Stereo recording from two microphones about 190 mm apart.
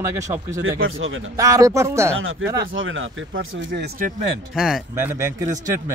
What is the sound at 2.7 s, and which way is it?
Speech, 90° right.